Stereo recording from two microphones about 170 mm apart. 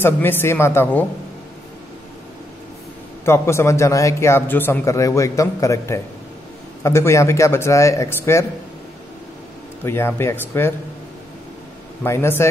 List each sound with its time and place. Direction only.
0.0 s a man's voice: 10° left (ahead or behind)
3.3 s a man's voice: 15° left (ahead or behind)
9.8 s a man's voice: 15° left (ahead or behind)
12.0 s a man's voice: 15° left (ahead or behind)